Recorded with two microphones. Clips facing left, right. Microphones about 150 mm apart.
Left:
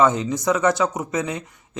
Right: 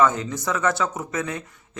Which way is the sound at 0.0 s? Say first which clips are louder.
Left 2 dB; 20° left (ahead or behind).